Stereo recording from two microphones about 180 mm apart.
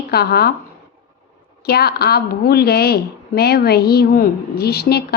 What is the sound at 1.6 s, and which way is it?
A woman's voice, 60° left (ahead or behind).